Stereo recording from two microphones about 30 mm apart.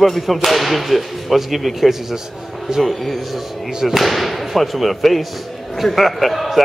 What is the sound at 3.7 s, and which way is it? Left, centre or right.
Speech, centre.